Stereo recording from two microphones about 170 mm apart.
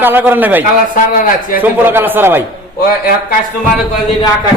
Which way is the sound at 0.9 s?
55° left (ahead or behind).